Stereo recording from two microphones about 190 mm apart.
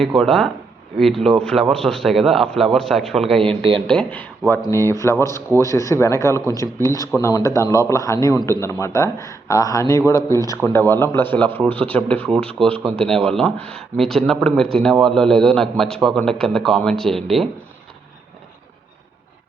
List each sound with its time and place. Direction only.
0.2 s a man's voice: centre (ahead or behind)
3.4 s speech: 30° right (ahead or behind)
3.8 s a man's voice: 5° left (ahead or behind)